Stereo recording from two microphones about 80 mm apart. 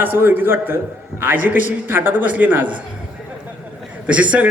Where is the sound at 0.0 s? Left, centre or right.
Right.